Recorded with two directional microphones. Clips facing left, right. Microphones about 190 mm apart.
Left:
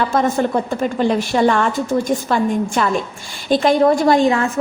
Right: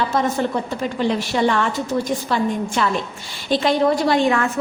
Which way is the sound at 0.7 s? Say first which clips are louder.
Left 4 dB; 50° left (ahead or behind).